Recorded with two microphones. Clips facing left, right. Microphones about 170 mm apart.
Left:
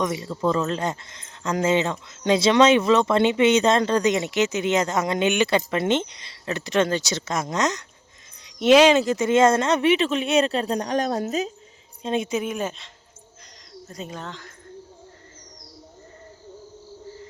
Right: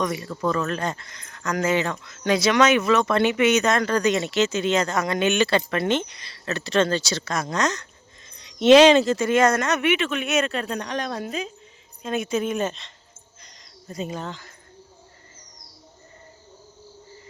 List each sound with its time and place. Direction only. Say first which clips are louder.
0.0 s speech: left 1 dB; 20° left (ahead or behind)
9.1 s speech: left 2 dB; 20° left (ahead or behind); by 11.5 s 40° left (ahead or behind)
12.0 s speech: left 1 dB; 25° left (ahead or behind)
12.4 s speech: right 2 dB; 10° left (ahead or behind)
13.8 s speech: right 4 dB; 5° right (ahead or behind)